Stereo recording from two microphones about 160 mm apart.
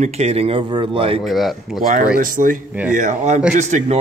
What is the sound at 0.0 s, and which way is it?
Speech, 45° right (ahead or behind).